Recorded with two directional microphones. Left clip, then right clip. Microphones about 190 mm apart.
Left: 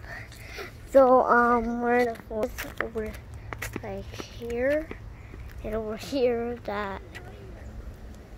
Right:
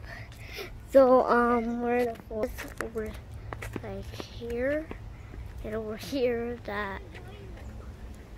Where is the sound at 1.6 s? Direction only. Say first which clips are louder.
Left 4 dB; 5° left (ahead or behind).